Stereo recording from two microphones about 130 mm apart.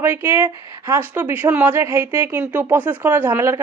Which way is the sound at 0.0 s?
15° right (ahead or behind).